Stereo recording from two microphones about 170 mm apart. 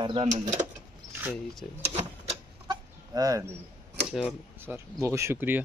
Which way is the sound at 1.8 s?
40° right (ahead or behind).